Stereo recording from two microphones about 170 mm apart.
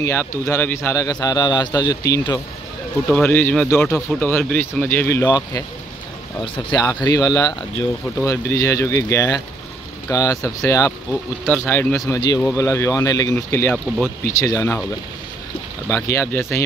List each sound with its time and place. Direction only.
0.0 s a man's voice: 15° left (ahead or behind)
6.7 s a man's voice: 20° left (ahead or behind)
15.9 s speech: 15° left (ahead or behind)